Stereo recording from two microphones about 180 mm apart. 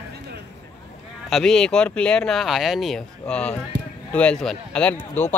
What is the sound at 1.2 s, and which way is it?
Speech, 5° left (ahead or behind).